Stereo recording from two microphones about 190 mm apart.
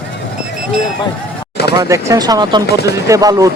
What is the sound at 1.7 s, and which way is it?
Speech, 15° right (ahead or behind).